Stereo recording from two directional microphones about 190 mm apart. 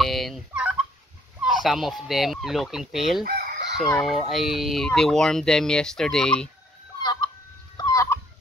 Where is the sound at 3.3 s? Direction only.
55° right (ahead or behind).